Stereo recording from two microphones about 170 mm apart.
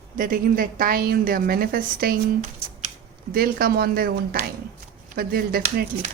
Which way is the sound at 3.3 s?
60° right (ahead or behind).